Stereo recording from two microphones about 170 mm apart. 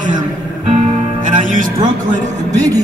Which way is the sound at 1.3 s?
50° right (ahead or behind).